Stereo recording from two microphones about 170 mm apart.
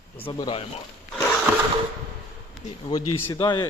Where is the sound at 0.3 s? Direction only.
30° left (ahead or behind).